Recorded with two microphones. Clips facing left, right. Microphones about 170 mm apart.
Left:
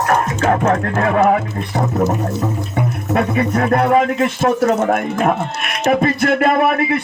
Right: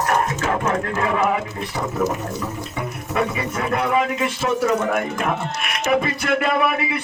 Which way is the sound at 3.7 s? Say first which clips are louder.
Left 6 dB; 45° left (ahead or behind).